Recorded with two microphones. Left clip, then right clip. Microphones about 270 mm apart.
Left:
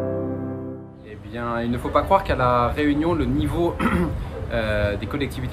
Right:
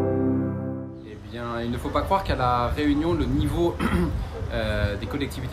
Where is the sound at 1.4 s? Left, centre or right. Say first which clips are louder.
Left 4 dB; centre.